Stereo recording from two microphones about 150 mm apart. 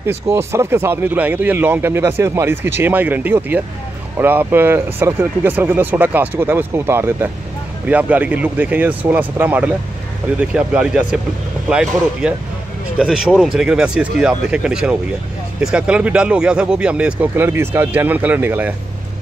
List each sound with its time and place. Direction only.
0.0 s speech: 15° right (ahead or behind)